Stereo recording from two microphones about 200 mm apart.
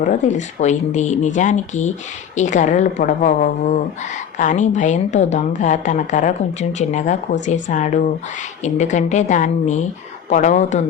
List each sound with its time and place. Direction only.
0.3 s a woman's voice: 35° left (ahead or behind)